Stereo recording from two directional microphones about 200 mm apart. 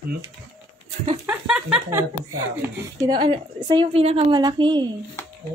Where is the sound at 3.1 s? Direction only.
25° right (ahead or behind).